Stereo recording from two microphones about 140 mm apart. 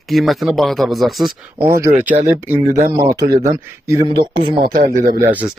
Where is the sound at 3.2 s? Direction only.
55° right (ahead or behind).